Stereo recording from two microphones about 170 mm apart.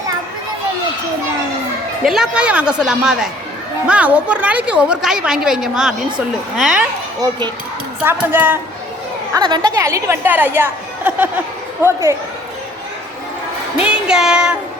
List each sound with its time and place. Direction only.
2.0 s a woman's voice: 5° right (ahead or behind)
7.2 s a child's voice: 25° right (ahead or behind)
8.0 s a woman's voice: 10° right (ahead or behind)
9.3 s a woman's voice: 25° right (ahead or behind)
13.7 s a sound: 5° right (ahead or behind)